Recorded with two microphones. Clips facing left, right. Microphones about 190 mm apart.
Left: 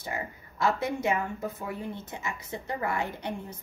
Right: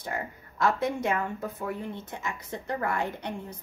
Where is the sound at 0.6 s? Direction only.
5° left (ahead or behind).